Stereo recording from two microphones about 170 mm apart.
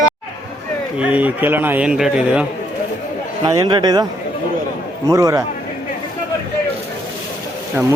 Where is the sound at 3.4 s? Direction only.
25° right (ahead or behind).